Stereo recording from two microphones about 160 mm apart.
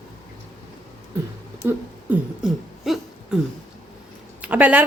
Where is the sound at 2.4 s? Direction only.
Centre (ahead or behind).